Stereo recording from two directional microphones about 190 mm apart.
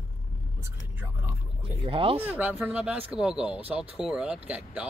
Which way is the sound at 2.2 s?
10° right (ahead or behind).